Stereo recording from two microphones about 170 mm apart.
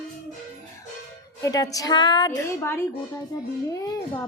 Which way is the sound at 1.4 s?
20° left (ahead or behind).